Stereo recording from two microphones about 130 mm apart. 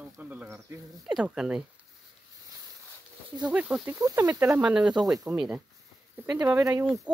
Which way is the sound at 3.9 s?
25° right (ahead or behind).